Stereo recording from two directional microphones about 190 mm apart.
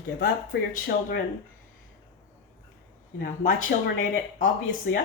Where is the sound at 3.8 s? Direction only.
45° left (ahead or behind).